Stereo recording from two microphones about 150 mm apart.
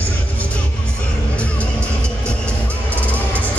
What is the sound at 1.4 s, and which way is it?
Music, 10° left (ahead or behind).